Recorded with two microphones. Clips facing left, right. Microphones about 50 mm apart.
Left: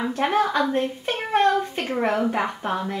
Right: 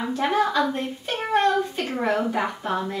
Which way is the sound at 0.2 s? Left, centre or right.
Left.